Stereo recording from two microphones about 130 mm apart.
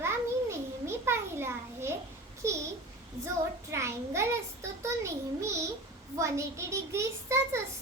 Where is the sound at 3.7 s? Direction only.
20° right (ahead or behind).